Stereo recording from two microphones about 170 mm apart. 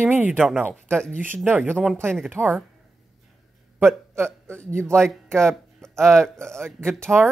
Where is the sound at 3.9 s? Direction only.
5° left (ahead or behind).